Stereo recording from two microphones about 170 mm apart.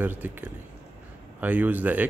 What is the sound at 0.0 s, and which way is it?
Speech, 10° right (ahead or behind).